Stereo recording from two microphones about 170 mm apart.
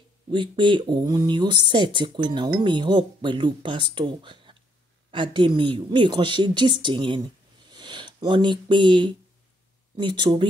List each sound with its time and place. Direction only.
0.3 s speech: 30° right (ahead or behind)